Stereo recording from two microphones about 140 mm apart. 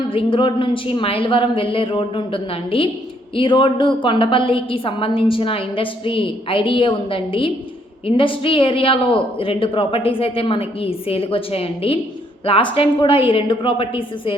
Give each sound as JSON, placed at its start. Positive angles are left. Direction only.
{"t": 0.1, "sound": "a woman's voice", "side_deg": 40}